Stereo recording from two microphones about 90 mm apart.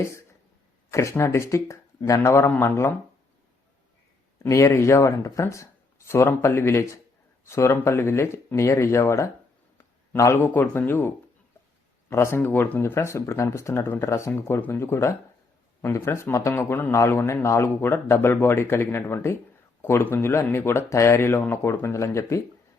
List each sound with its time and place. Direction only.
0.0 s a man's voice: 30° left (ahead or behind)
4.4 s a man's voice: 30° left (ahead or behind)